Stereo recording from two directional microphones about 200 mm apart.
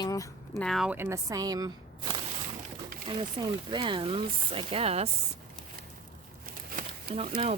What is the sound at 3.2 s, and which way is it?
Speech, 25° right (ahead or behind).